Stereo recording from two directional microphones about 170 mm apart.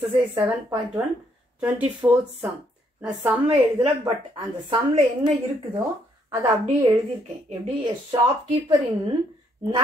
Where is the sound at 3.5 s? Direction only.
35° right (ahead or behind).